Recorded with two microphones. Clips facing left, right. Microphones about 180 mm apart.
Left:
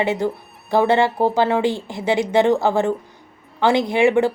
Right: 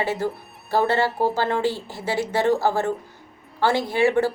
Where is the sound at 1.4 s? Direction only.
10° left (ahead or behind).